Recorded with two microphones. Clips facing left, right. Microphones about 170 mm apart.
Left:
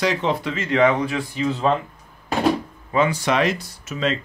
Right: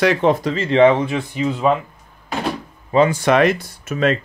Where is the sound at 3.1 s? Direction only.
55° right (ahead or behind).